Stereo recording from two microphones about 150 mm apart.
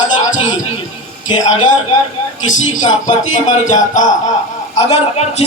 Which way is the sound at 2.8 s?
55° left (ahead or behind).